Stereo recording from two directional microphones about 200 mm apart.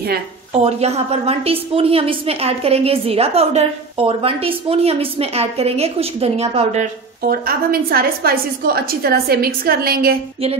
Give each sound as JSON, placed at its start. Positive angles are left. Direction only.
{"t": 0.5, "sound": "a woman's voice", "side_deg": -30}